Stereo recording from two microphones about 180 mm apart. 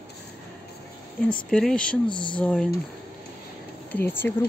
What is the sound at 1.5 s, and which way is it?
Speech, 5° left (ahead or behind).